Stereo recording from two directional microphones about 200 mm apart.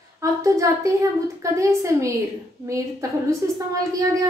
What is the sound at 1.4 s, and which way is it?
A woman's voice, 15° right (ahead or behind).